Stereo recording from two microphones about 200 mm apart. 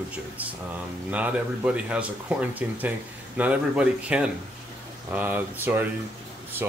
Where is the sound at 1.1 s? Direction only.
5° right (ahead or behind).